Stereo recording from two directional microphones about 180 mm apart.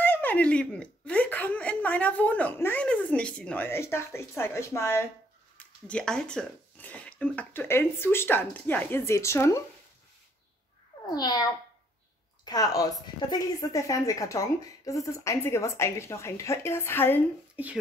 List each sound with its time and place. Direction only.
0.0 s speech: 10° left (ahead or behind)
11.1 s a child's voice: 20° left (ahead or behind)
12.4 s a woman's voice: 20° left (ahead or behind)